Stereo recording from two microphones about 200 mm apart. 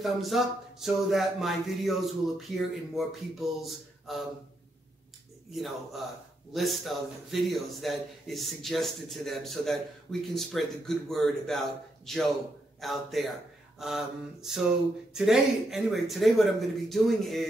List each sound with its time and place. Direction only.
0.0 s speech: centre (ahead or behind)
6.5 s speech: centre (ahead or behind)